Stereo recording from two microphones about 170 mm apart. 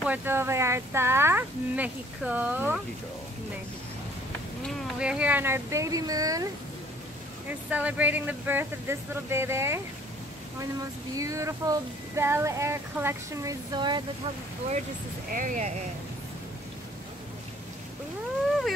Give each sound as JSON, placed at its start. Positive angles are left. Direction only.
{"t": 0.0, "sound": "speech", "side_deg": -10}
{"t": 4.6, "sound": "speech", "side_deg": -5}
{"t": 7.4, "sound": "speech", "side_deg": -10}
{"t": 10.8, "sound": "speech", "side_deg": -20}
{"t": 15.3, "sound": "speech", "side_deg": -50}